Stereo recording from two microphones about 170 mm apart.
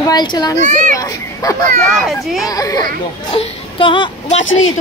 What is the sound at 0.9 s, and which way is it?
Speech, 20° left (ahead or behind).